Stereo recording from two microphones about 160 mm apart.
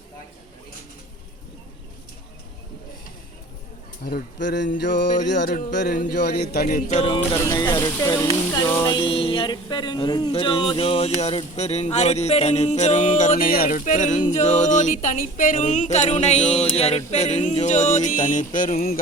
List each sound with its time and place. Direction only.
4.0 s speech: 80° left; by 7.0 s 55° left (ahead or behind)
7.0 s music: 35° left (ahead or behind)
7.3 s speech: 20° left (ahead or behind); by 18.9 s 60° left (ahead or behind)